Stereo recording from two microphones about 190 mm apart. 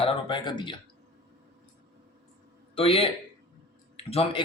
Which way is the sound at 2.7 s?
30° left (ahead or behind).